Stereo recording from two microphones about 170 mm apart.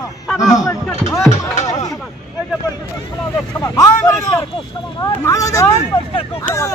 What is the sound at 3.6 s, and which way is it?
Speech, 20° left (ahead or behind).